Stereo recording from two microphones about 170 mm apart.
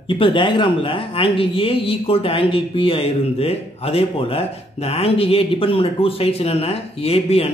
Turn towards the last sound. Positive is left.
turn(degrees=35)  # may be behind; listen again after turning